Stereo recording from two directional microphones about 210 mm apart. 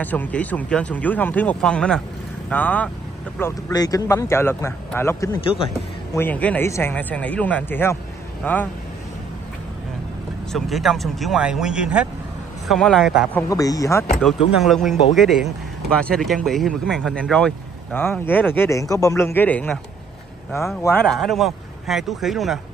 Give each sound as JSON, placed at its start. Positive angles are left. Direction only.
{"t": 0.0, "sound": "speech", "side_deg": 10}
{"t": 10.5, "sound": "speech", "side_deg": 0}
{"t": 13.4, "sound": "speech", "side_deg": 15}
{"t": 14.6, "sound": "speech", "side_deg": 0}
{"t": 20.8, "sound": "speech", "side_deg": 5}